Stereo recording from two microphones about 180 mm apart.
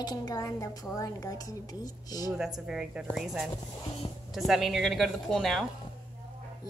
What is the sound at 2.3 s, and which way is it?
Speech, 5° right (ahead or behind).